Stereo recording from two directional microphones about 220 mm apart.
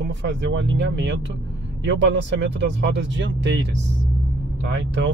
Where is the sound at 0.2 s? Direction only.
55° right (ahead or behind).